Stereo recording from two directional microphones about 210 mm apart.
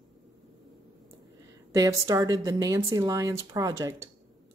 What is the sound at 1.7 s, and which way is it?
Speech, 15° right (ahead or behind).